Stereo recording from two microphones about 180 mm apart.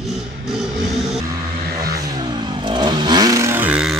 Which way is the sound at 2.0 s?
25° right (ahead or behind).